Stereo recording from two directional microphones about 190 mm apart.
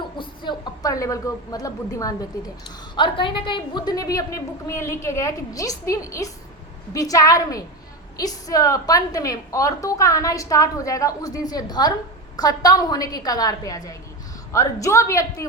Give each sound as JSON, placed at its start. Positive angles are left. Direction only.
{"t": 0.2, "sound": "a woman's voice", "side_deg": 25}